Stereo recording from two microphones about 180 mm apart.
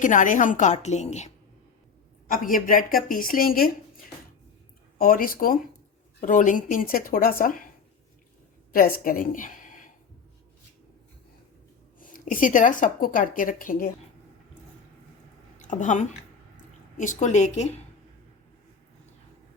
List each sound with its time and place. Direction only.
0.0 s a woman's voice: 45° left (ahead or behind)
2.3 s a woman's voice: 50° left (ahead or behind)
4.9 s a woman's voice: 50° left (ahead or behind)
8.7 s a woman's voice: 50° left (ahead or behind)
11.9 s a woman's voice: 50° left (ahead or behind)
15.5 s a woman's voice: 45° left (ahead or behind)